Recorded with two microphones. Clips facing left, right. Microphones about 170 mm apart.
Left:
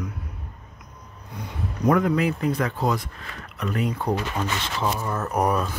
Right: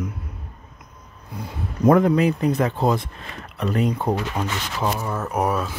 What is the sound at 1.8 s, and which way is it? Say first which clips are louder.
Speech: right 4 dB; 30° right (ahead or behind).